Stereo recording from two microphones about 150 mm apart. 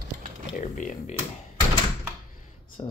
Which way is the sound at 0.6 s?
60° left (ahead or behind).